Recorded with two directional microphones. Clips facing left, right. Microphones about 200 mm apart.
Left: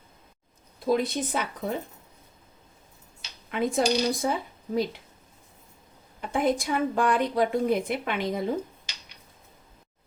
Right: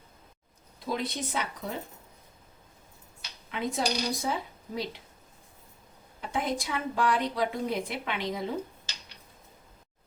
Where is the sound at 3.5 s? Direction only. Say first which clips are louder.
Left 6 dB; 50° left (ahead or behind).